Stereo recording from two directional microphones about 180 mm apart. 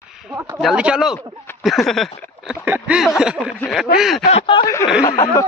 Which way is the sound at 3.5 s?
10° left (ahead or behind).